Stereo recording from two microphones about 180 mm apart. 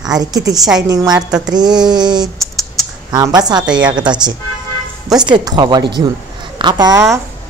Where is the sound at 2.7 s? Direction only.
20° right (ahead or behind).